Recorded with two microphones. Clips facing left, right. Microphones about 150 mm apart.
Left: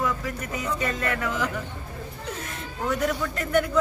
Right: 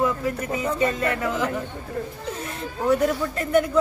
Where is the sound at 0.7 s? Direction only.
30° right (ahead or behind).